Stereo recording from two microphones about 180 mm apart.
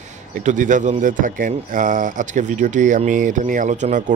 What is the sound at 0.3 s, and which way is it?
Speech, 45° right (ahead or behind).